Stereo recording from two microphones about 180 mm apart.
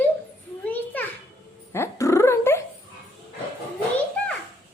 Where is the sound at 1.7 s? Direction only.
15° left (ahead or behind).